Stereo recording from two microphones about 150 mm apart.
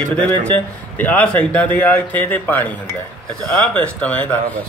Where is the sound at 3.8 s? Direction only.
10° left (ahead or behind).